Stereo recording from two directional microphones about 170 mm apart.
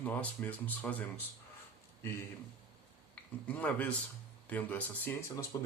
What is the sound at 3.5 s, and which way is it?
Speech, 10° left (ahead or behind).